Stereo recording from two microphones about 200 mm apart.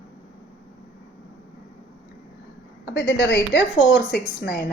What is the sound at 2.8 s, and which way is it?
A woman's voice, 55° left (ahead or behind).